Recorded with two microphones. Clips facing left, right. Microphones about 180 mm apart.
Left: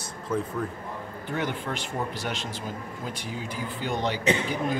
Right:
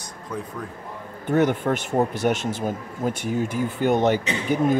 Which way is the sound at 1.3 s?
45° right (ahead or behind).